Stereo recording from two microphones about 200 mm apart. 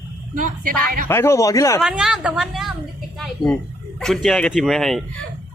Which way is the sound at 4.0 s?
5° left (ahead or behind).